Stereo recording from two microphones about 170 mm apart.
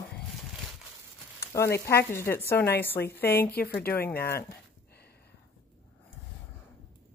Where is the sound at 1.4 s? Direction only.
15° left (ahead or behind).